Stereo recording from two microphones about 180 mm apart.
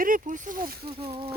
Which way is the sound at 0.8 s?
30° right (ahead or behind).